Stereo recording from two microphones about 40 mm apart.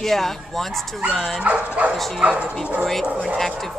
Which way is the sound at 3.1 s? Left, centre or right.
Right.